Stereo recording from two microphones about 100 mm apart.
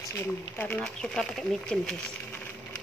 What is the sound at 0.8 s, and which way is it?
Speech, 5° left (ahead or behind).